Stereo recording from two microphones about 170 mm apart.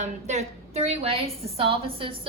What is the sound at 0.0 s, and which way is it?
A woman's voice, 40° right (ahead or behind).